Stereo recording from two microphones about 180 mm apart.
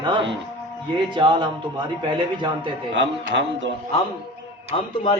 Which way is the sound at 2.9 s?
80° right.